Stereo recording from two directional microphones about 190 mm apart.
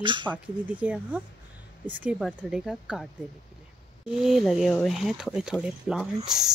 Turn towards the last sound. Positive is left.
turn(degrees=0)  # may be behind; listen again after turning